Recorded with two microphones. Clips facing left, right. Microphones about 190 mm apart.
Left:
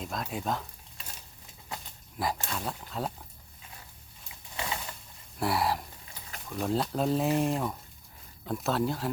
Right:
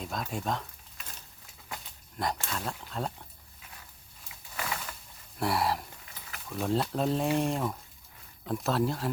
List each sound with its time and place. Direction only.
0.0 s speech: centre (ahead or behind)
2.1 s speech: 5° left (ahead or behind)
4.5 s a sound: 25° left (ahead or behind)
5.4 s speech: centre (ahead or behind)